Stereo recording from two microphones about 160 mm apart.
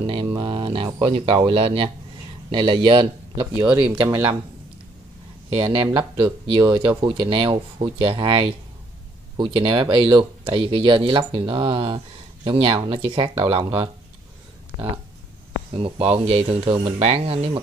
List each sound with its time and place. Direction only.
0.0 s music: 30° right (ahead or behind)
1.1 s speech: 35° right (ahead or behind)
5.6 s speech: 30° right (ahead or behind)
15.7 s speech: 35° right (ahead or behind)